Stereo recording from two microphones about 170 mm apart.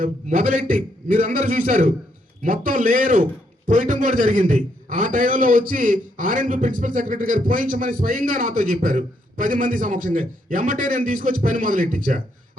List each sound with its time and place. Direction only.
0.0 s a man's voice: 50° right (ahead or behind)